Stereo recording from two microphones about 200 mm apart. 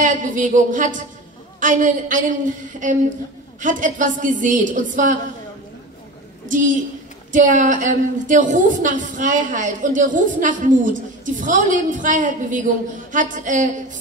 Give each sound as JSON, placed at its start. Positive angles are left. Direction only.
{"t": 0.0, "sound": "a woman's voice", "side_deg": -40}
{"t": 6.4, "sound": "a woman's voice", "side_deg": -40}